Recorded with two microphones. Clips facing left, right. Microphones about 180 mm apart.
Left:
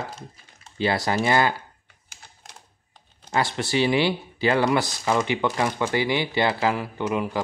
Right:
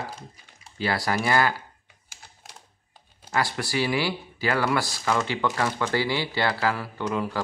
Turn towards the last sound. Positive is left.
turn(degrees=15)  # may be behind; listen again after turning